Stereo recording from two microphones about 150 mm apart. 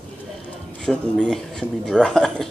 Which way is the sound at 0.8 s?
5° left (ahead or behind).